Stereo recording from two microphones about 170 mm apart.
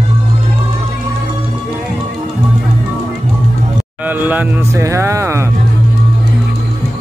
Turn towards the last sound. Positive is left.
turn(degrees=-15)  # may be behind; listen again after turning